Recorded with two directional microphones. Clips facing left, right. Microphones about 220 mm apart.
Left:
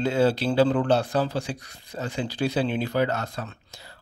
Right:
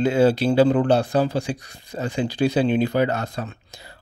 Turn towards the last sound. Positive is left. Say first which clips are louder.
# right 4 dB
turn(degrees=-15)  # may be behind; listen again after turning